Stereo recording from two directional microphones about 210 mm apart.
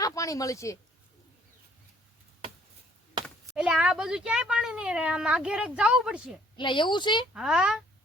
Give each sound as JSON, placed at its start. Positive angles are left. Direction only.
{"t": 0.0, "sound": "speech", "side_deg": 15}
{"t": 3.2, "sound": "speech", "side_deg": 0}
{"t": 6.6, "sound": "speech", "side_deg": 20}
{"t": 7.3, "sound": "speech", "side_deg": -5}